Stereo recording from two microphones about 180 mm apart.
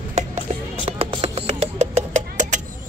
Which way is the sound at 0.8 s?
35° right (ahead or behind).